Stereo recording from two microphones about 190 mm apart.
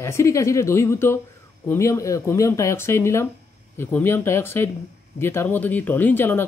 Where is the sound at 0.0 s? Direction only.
15° left (ahead or behind).